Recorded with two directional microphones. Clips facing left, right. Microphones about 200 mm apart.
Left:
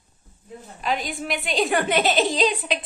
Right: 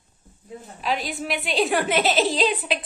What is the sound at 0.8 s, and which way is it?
A woman's voice, centre (ahead or behind).